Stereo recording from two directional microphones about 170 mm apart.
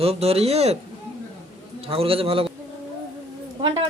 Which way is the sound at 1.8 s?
35° right (ahead or behind).